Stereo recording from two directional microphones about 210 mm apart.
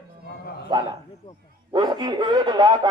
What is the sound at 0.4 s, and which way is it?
Dog, 50° left (ahead or behind).